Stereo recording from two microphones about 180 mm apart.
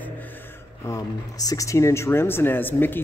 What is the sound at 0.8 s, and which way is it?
A man's voice, 20° left (ahead or behind).